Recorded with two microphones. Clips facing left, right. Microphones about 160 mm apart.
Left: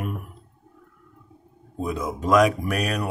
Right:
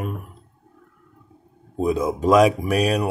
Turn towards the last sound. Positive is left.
turn(degrees=-30)  # may be behind; listen again after turning